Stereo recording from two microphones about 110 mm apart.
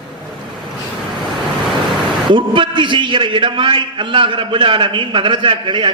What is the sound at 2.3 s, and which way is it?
A man's voice, 50° right (ahead or behind).